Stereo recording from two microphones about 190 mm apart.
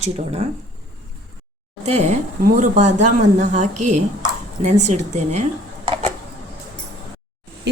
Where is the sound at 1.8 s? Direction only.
35° right (ahead or behind).